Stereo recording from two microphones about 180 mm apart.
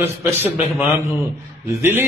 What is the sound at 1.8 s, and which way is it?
Speech, 15° right (ahead or behind).